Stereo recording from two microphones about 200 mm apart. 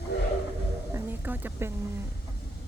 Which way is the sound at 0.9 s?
10° right (ahead or behind).